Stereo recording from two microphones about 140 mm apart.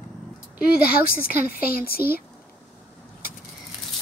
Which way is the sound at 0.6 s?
90° left.